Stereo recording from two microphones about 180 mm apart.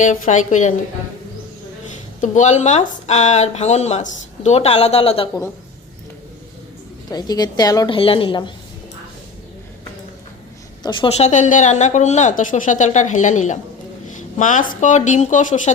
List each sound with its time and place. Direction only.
0.0 s speech: 45° left (ahead or behind)
2.2 s speech: 40° left (ahead or behind)
7.1 s a woman's voice: 20° left (ahead or behind)
10.8 s a woman's voice: 25° left (ahead or behind)
11.3 s speech: 45° left (ahead or behind)